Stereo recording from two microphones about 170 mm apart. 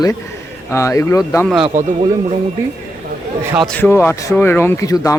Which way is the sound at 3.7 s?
10° left (ahead or behind).